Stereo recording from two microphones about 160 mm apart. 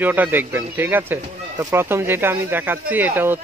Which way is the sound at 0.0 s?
10° right (ahead or behind).